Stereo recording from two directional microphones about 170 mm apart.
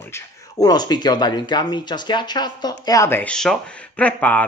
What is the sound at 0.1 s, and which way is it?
Speech, 20° left (ahead or behind).